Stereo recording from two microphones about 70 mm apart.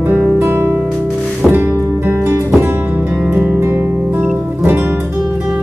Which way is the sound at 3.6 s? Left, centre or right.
Right.